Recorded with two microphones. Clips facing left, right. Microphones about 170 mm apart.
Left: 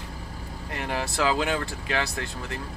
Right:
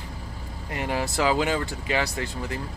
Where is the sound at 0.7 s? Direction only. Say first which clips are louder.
Right 3 dB; 5° right (ahead or behind).